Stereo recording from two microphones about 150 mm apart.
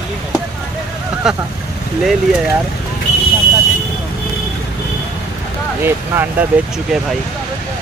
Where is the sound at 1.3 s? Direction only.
5° right (ahead or behind).